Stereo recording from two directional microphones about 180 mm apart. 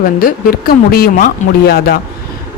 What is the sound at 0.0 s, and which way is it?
Speech, 50° left (ahead or behind).